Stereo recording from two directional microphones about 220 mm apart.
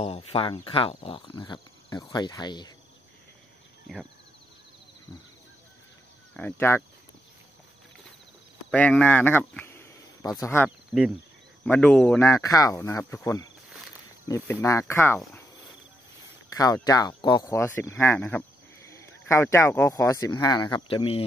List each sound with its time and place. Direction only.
0.0 s speech: 25° left (ahead or behind)
6.3 s speech: 10° left (ahead or behind)
8.6 s speech: 5° left (ahead or behind)
10.9 s speech: centre (ahead or behind)
16.4 s speech: 15° left (ahead or behind)